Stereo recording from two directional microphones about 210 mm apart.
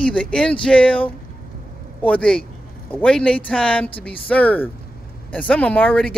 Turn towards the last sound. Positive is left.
turn(degrees=5)  # may be behind; listen again after turning